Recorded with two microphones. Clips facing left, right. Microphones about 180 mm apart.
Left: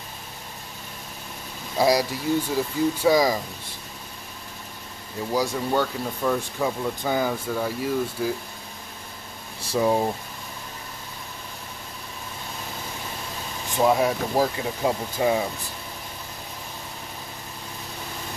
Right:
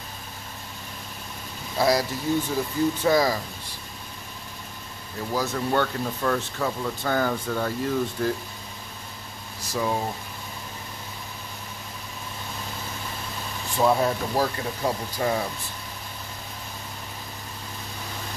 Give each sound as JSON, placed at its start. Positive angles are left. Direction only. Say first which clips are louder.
{"t": 1.8, "sound": "speech", "louder": "left 2 dB", "side_deg": 15}
{"t": 5.3, "sound": "speech", "louder": "left 1 dB", "side_deg": 15}
{"t": 9.6, "sound": "speech", "louder": "left 5 dB", "side_deg": 30}
{"t": 13.7, "sound": "speech", "louder": "left 1 dB", "side_deg": 15}